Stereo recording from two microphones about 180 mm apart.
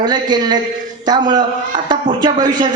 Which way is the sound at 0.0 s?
25° right (ahead or behind).